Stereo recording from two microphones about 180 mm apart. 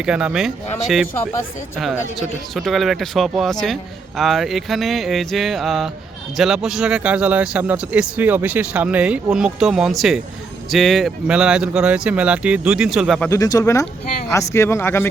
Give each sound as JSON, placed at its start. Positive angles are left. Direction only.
{"t": 0.0, "sound": "speech", "side_deg": -5}
{"t": 1.8, "sound": "speech", "side_deg": 0}
{"t": 13.2, "sound": "speech", "side_deg": 20}